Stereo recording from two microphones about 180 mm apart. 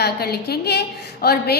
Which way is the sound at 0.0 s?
60° left (ahead or behind).